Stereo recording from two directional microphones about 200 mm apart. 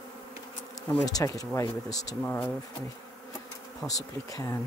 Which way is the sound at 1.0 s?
20° left (ahead or behind).